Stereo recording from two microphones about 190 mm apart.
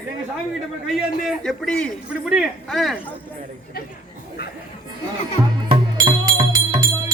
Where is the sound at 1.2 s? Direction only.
5° left (ahead or behind).